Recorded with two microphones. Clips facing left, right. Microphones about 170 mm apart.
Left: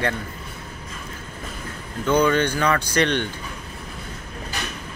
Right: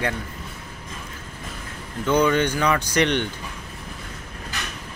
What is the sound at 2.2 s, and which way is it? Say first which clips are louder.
Speech: even; 15° right (ahead or behind).